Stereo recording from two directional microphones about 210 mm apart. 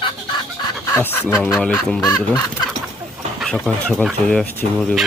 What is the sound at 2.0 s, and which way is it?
Chicken, 20° left (ahead or behind).